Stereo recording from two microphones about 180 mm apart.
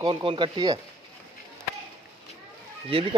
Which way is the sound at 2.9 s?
30° right (ahead or behind).